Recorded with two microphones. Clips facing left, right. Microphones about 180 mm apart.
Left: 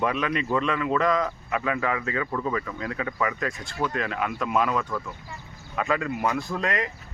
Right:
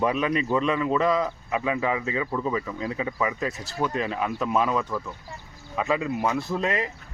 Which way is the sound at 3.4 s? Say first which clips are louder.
Right 1 dB; 5° right (ahead or behind).